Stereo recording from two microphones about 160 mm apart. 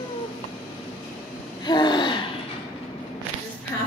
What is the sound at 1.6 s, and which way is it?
Speech, 30° left (ahead or behind).